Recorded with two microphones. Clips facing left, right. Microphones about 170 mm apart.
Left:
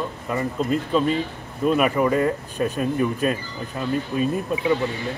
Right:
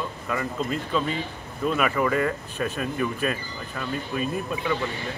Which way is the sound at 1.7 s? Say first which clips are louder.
Left 4 dB; 30° left (ahead or behind).